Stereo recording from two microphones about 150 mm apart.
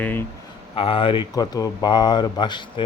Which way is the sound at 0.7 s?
35° left (ahead or behind).